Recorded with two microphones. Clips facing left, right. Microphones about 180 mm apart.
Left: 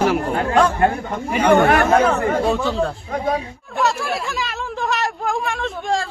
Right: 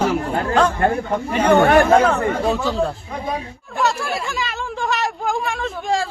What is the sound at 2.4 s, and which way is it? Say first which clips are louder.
Speech: even; centre (ahead or behind).